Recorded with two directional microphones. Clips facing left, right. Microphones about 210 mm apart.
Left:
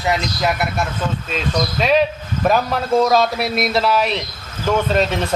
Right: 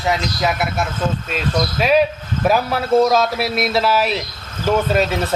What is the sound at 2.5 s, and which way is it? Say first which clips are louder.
A man's voice: right 1 dB; 5° right (ahead or behind).